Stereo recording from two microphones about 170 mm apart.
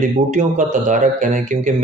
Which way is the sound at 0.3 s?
45° right (ahead or behind).